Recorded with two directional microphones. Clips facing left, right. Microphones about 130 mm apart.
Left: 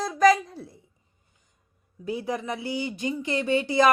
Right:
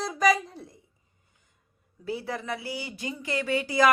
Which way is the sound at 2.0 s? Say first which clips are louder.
Left 3 dB; 15° left (ahead or behind).